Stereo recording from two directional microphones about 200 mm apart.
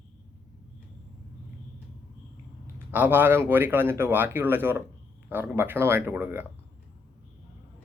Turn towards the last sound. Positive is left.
turn(degrees=-10)  # may be behind; listen again after turning